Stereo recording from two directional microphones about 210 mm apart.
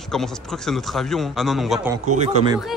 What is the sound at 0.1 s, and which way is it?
A man's voice, centre (ahead or behind).